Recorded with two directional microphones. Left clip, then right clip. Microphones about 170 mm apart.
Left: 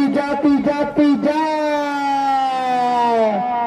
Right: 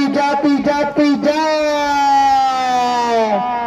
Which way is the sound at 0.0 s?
50° right (ahead or behind).